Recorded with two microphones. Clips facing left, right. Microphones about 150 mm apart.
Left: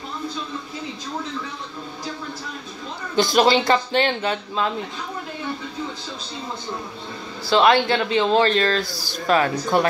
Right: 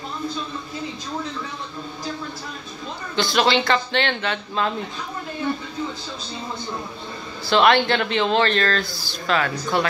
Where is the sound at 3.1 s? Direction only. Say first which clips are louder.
Left 4 dB; 45° left (ahead or behind).